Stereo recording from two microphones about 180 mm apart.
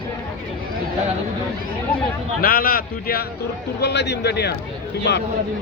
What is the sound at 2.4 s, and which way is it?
Speech, 55° left (ahead or behind).